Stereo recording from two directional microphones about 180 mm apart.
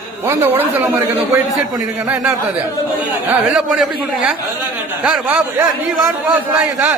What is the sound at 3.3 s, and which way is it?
A man's voice, 5° right (ahead or behind).